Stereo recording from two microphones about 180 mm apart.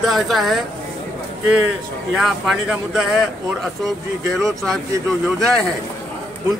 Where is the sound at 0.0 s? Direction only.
Centre (ahead or behind).